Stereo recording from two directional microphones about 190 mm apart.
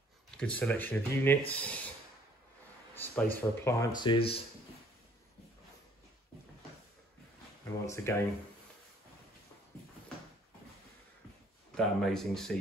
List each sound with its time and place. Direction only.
0.4 s speech: 5° left (ahead or behind)
2.9 s speech: 10° left (ahead or behind); by 4.4 s 25° left (ahead or behind)
7.8 s speech: 15° left (ahead or behind)
11.7 s speech: 5° left (ahead or behind)